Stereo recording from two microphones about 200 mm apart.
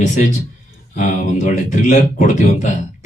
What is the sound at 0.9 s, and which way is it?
Music, 40° left (ahead or behind).